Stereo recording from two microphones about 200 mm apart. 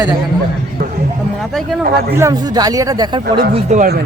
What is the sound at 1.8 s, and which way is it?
Speech, 50° right (ahead or behind).